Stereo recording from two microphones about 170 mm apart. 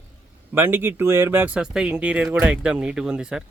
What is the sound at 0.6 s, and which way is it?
Speech, 15° right (ahead or behind).